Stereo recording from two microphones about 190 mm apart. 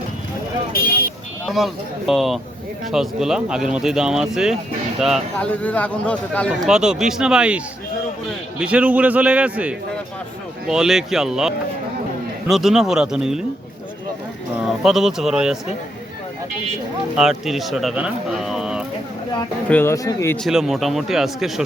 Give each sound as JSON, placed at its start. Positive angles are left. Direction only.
{"t": 1.5, "sound": "a man's voice", "side_deg": 0}
{"t": 14.6, "sound": "speech", "side_deg": 0}
{"t": 17.2, "sound": "speech", "side_deg": 0}
{"t": 19.7, "sound": "speech", "side_deg": 15}
{"t": 20.4, "sound": "speech", "side_deg": 0}